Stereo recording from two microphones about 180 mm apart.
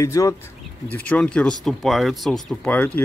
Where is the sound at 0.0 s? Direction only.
15° left (ahead or behind).